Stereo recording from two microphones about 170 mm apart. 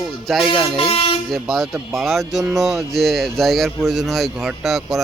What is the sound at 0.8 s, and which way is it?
Speech, 35° left (ahead or behind).